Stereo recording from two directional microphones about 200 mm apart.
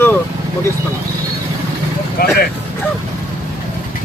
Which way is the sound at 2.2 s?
45° left (ahead or behind).